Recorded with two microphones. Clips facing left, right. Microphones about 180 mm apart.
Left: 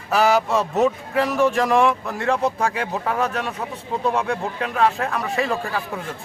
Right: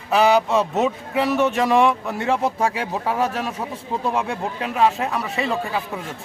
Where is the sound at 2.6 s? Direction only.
25° right (ahead or behind).